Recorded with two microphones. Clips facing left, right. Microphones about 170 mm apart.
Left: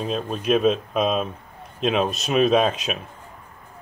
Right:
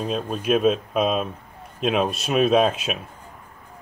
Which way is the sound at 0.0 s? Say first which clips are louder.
Even; centre (ahead or behind).